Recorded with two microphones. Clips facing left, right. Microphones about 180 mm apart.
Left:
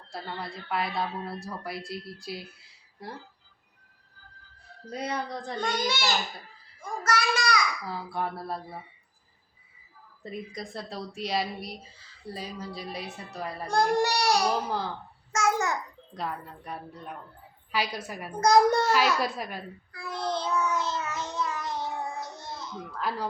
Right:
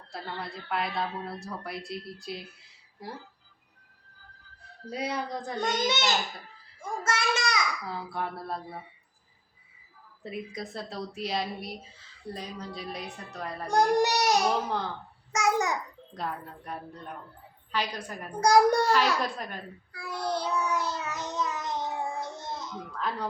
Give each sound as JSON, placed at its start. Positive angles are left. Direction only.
{"t": 0.1, "sound": "speech", "side_deg": 0}
{"t": 4.9, "sound": "speech", "side_deg": -5}
{"t": 5.7, "sound": "a child's voice", "side_deg": -20}
{"t": 7.0, "sound": "babbling", "side_deg": -25}
{"t": 7.9, "sound": "speech", "side_deg": 0}
{"t": 10.2, "sound": "speech", "side_deg": -5}
{"t": 13.9, "sound": "speech", "side_deg": -20}
{"t": 14.5, "sound": "speech", "side_deg": 0}
{"t": 15.3, "sound": "speech", "side_deg": -15}
{"t": 16.1, "sound": "a woman's voice", "side_deg": 0}
{"t": 18.3, "sound": "speech", "side_deg": -10}
{"t": 18.9, "sound": "a woman's voice", "side_deg": 5}
{"t": 19.9, "sound": "child singing", "side_deg": -10}
{"t": 23.0, "sound": "speech", "side_deg": 5}